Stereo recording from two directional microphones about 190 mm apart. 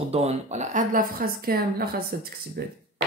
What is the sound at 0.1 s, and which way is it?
Speech, 35° right (ahead or behind).